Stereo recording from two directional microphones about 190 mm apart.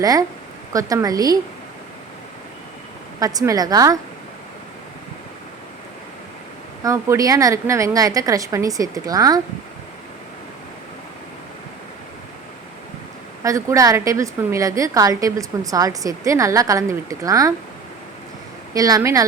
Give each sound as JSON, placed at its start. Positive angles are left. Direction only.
{"t": 0.0, "sound": "a woman's voice", "side_deg": -20}
{"t": 3.2, "sound": "a woman's voice", "side_deg": -20}
{"t": 6.8, "sound": "a woman's voice", "side_deg": -15}
{"t": 13.4, "sound": "a woman's voice", "side_deg": -15}
{"t": 18.7, "sound": "a woman's voice", "side_deg": -20}